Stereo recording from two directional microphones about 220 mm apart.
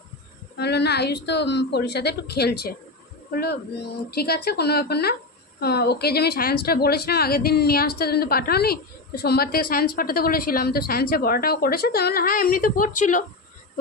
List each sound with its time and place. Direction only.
0.6 s a woman's voice: 50° left (ahead or behind)